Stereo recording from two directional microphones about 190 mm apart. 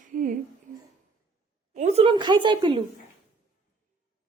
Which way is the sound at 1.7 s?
35° right (ahead or behind).